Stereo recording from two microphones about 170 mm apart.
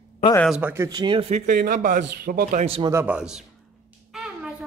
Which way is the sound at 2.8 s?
10° right (ahead or behind).